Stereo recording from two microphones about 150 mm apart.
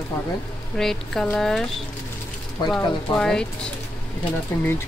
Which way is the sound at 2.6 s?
5° left (ahead or behind).